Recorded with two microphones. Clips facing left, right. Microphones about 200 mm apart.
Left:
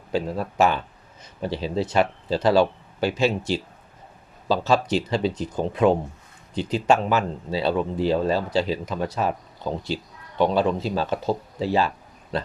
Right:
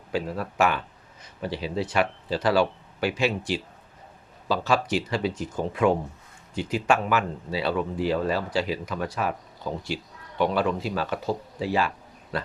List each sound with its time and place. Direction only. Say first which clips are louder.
0.1 s speech: left 3 dB; 25° left (ahead or behind)